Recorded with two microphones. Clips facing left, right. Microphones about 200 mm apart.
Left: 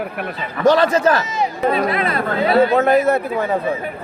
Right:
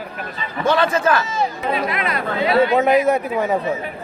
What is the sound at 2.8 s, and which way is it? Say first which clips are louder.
Speech: left 1 dB; 15° right (ahead or behind).